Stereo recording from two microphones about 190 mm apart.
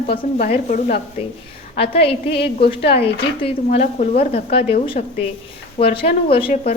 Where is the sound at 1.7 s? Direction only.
30° left (ahead or behind).